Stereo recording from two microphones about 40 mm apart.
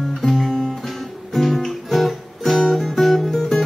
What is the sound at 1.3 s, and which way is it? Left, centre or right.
Guitar, centre.